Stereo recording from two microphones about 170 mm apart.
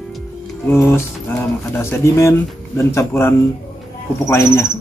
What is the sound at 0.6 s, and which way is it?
Speech, 15° left (ahead or behind).